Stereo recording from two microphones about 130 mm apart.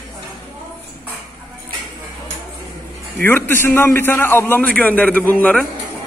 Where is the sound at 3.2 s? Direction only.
15° left (ahead or behind).